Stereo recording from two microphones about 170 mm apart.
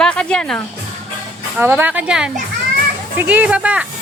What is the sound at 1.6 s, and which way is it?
Speech, 10° right (ahead or behind).